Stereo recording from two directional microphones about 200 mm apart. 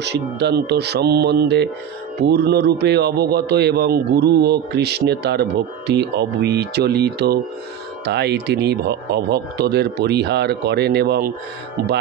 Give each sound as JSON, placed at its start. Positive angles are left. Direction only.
{"t": 0.0, "sound": "a man's voice", "side_deg": -60}